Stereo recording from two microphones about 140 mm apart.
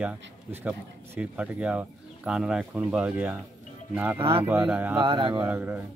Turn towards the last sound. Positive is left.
turn(degrees=-15)  # may be behind; listen again after turning